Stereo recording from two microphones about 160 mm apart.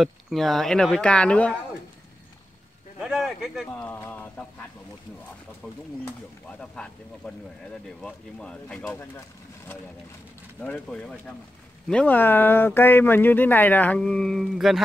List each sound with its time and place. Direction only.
0.0 s speech: centre (ahead or behind)
3.0 s speech: centre (ahead or behind)
3.7 s speech: 15° left (ahead or behind)
6.6 s speech: 5° left (ahead or behind)
10.6 s speech: 10° left (ahead or behind)